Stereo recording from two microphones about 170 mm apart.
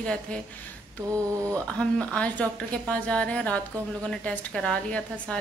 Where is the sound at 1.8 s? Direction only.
5° left (ahead or behind).